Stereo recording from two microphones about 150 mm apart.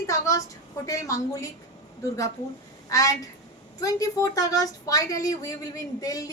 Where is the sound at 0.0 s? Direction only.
20° left (ahead or behind).